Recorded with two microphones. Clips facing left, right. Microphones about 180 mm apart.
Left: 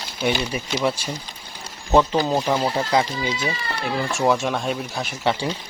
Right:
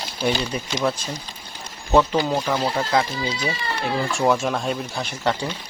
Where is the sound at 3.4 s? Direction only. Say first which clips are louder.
Right 1 dB; centre (ahead or behind).